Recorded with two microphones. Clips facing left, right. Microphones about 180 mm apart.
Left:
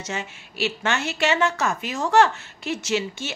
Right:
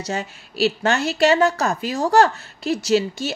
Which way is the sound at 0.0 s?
35° right (ahead or behind).